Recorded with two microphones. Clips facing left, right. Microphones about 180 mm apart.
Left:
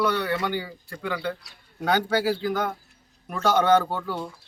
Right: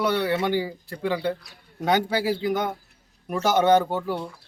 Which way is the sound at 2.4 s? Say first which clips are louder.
Right 1 dB; 15° right (ahead or behind).